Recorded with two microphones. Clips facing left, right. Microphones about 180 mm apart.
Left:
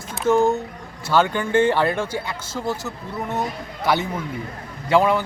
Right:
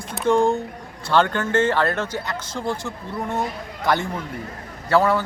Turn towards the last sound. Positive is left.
turn(degrees=15)  # may be behind; listen again after turning